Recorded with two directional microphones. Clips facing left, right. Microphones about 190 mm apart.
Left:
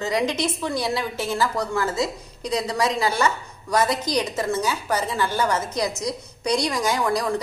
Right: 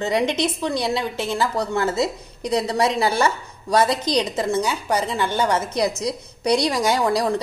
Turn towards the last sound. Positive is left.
turn(degrees=-30)  # may be behind; listen again after turning